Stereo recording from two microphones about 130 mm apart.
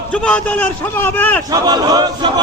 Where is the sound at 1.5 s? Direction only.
30° right (ahead or behind).